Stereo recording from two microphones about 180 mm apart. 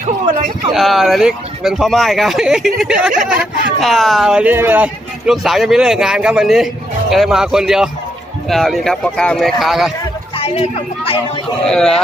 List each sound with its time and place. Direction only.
0.7 s speech: centre (ahead or behind)
10.3 s speech: 30° left (ahead or behind)
11.6 s speech: 5° left (ahead or behind)